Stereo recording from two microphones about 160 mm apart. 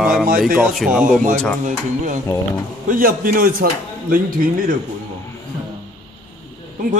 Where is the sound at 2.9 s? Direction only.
65° right (ahead or behind).